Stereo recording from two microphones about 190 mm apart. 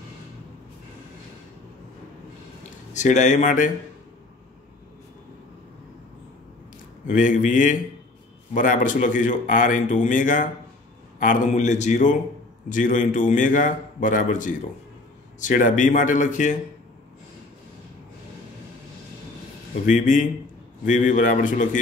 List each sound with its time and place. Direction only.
2.9 s a man's voice: 40° left (ahead or behind)
7.1 s a man's voice: 45° left (ahead or behind)
19.7 s a man's voice: 40° left (ahead or behind)